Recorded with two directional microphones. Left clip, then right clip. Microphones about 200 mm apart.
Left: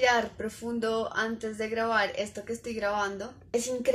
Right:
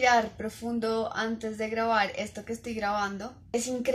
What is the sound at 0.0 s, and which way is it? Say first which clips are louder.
A woman's voice: right 1 dB; 5° left (ahead or behind).